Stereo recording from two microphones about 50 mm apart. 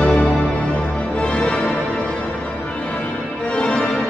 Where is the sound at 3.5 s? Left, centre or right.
Left.